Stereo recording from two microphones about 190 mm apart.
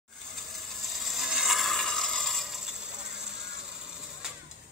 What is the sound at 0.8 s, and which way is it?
Mechanisms, centre (ahead or behind).